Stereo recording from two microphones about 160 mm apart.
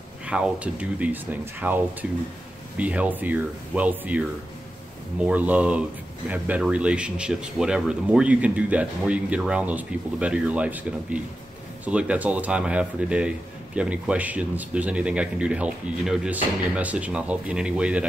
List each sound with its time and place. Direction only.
0.3 s speech: 10° right (ahead or behind)
5.2 s speech: 10° right (ahead or behind)